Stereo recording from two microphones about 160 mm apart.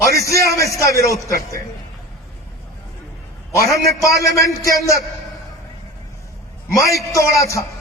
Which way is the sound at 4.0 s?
20° left (ahead or behind).